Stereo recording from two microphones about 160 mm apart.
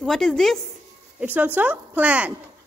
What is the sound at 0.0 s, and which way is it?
Speech, 5° left (ahead or behind).